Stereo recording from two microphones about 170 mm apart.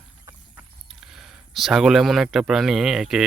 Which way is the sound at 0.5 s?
5° right (ahead or behind).